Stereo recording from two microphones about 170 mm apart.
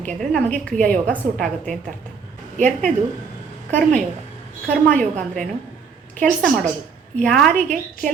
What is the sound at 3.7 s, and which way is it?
Speech, 5° left (ahead or behind).